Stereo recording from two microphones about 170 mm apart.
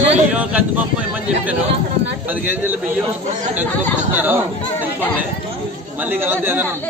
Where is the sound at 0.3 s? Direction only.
10° right (ahead or behind).